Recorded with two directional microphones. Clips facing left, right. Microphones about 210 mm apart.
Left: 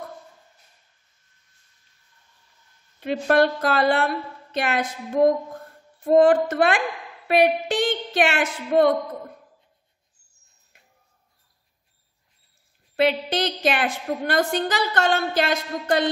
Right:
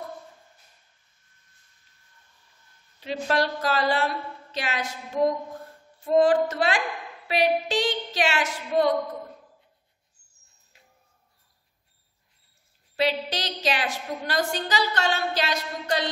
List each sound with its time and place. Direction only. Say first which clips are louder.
3.0 s a woman's voice: left 6 dB; 55° left (ahead or behind)
12.9 s a woman's voice: left 5 dB; 55° left (ahead or behind)